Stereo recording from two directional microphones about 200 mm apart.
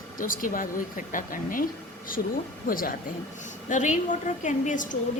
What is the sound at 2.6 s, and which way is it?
A woman's voice, 45° left (ahead or behind).